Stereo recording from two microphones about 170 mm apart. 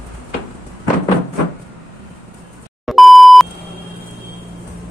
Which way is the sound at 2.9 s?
Centre (ahead or behind).